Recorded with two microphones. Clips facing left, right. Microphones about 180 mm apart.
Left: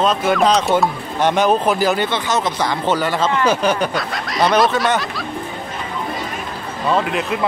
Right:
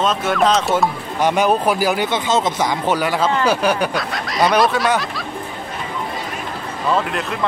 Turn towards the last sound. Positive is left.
turn(degrees=0)  # may be behind; listen again after turning